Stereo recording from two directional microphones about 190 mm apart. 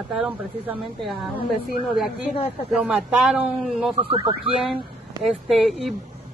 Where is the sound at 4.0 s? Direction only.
30° right (ahead or behind).